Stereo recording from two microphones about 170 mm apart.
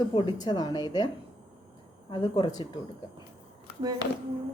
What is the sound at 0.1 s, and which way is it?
Speech, 30° left (ahead or behind).